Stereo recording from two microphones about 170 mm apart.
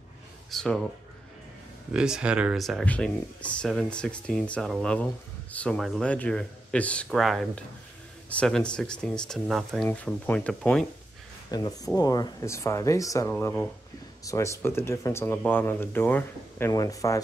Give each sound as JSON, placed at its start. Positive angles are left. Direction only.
{"t": 0.5, "sound": "speech", "side_deg": 0}
{"t": 2.0, "sound": "speech", "side_deg": -5}
{"t": 11.5, "sound": "speech", "side_deg": 20}